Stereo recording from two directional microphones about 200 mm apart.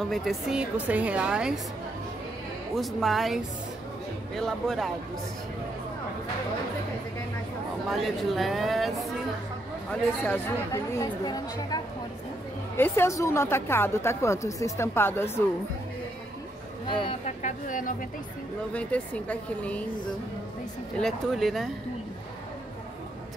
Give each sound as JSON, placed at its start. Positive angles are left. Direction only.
{"t": 0.0, "sound": "a woman's voice", "side_deg": 0}
{"t": 2.7, "sound": "a woman's voice", "side_deg": 0}
{"t": 7.9, "sound": "a woman's voice", "side_deg": 0}
{"t": 10.2, "sound": "a woman's voice", "side_deg": 10}
{"t": 17.0, "sound": "speech", "side_deg": 35}
{"t": 18.7, "sound": "a woman's voice", "side_deg": 5}
{"t": 21.0, "sound": "a woman's voice", "side_deg": 0}